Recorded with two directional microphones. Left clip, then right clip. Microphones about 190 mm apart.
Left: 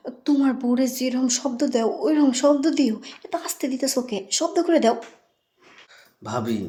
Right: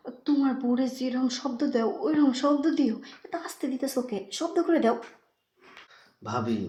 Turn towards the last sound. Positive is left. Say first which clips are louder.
# left 3 dB
turn(degrees=25)  # may be behind; listen again after turning